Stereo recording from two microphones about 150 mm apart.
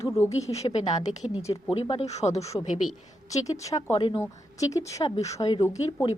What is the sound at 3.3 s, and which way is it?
Speech, 25° left (ahead or behind).